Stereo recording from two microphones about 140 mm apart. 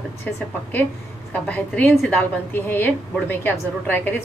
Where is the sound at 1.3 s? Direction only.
10° left (ahead or behind).